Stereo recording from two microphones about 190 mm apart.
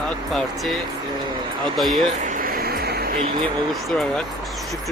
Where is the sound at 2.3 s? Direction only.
45° right (ahead or behind).